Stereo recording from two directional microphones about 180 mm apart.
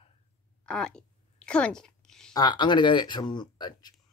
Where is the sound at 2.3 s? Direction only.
25° left (ahead or behind).